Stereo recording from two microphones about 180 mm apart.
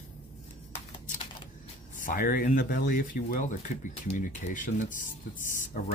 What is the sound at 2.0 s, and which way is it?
Speech, 50° left (ahead or behind).